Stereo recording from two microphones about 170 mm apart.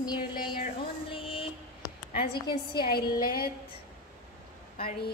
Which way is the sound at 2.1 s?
70° left (ahead or behind).